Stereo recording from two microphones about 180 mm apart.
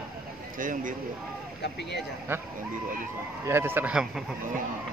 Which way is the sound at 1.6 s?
70° left (ahead or behind).